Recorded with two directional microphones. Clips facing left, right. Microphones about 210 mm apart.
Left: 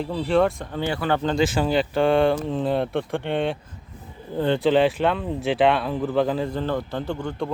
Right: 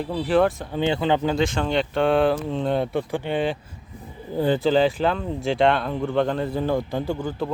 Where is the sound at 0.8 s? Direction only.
20° right (ahead or behind).